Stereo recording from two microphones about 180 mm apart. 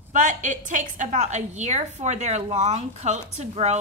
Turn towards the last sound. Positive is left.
turn(degrees=-40)  # may be behind; listen again after turning